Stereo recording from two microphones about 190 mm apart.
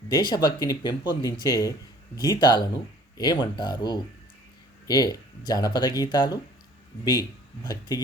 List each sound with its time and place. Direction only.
0.1 s speech: 20° left (ahead or behind)